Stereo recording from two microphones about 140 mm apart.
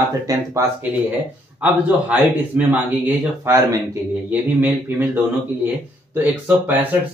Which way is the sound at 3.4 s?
25° right (ahead or behind).